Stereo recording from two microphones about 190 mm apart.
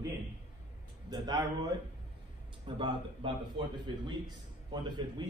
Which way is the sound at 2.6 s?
25° right (ahead or behind).